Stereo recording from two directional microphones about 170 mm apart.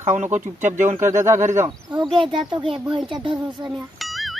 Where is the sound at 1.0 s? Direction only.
15° right (ahead or behind).